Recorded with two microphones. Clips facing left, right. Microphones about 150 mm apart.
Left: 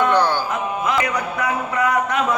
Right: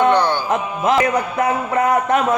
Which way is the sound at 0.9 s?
45° right (ahead or behind).